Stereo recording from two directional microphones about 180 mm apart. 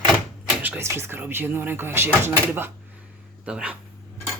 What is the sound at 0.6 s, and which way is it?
Speech, 10° right (ahead or behind).